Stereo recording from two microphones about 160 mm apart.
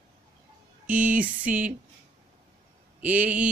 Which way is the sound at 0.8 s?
10° right (ahead or behind).